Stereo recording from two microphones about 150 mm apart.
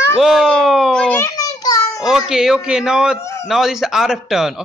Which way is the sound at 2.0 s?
Centre (ahead or behind).